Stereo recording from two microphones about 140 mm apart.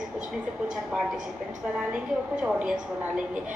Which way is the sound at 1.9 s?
5° right (ahead or behind).